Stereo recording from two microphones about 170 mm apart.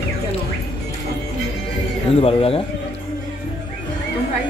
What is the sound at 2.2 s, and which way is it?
Speech, 35° left (ahead or behind).